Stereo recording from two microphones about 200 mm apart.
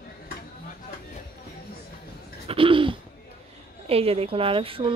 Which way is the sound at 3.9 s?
30° right (ahead or behind).